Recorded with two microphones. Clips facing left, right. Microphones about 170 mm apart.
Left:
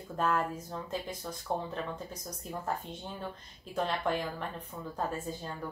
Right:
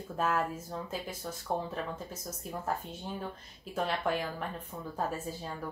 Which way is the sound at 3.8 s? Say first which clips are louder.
Right 1 dB; 5° right (ahead or behind).